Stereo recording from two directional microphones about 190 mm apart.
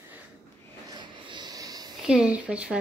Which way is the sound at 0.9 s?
25° right (ahead or behind).